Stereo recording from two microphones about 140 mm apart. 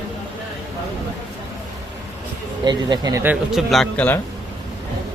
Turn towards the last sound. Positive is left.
turn(degrees=0)  # may be behind; listen again after turning